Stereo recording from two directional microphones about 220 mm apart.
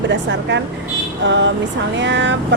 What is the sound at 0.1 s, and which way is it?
A woman's voice, 55° right (ahead or behind).